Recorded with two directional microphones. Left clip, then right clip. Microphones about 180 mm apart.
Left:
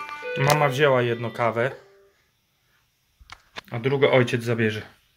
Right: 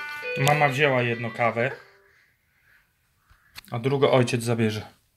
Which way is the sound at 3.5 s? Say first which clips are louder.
Left 1 dB; 15° right (ahead or behind).